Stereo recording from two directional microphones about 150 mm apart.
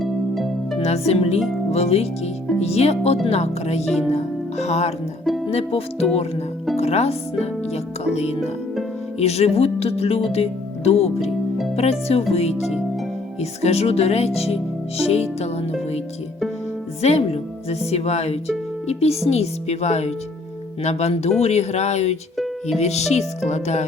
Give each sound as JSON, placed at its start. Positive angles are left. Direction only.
{"t": 0.0, "sound": "music", "side_deg": 0}
{"t": 0.8, "sound": "speech", "side_deg": 45}
{"t": 17.0, "sound": "speech", "side_deg": 45}